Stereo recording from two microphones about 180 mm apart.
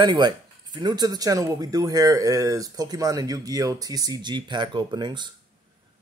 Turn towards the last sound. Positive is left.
turn(degrees=-25)  # may be behind; listen again after turning